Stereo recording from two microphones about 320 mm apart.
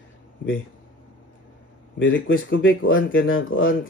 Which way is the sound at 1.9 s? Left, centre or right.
Left.